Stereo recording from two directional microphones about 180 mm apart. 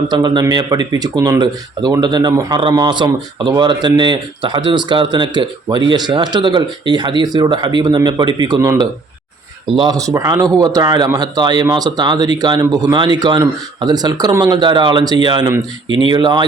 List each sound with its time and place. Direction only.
0.1 s speech: 25° right (ahead or behind)